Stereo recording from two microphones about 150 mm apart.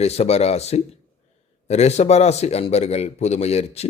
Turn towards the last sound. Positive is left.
turn(degrees=45)  # may be behind; listen again after turning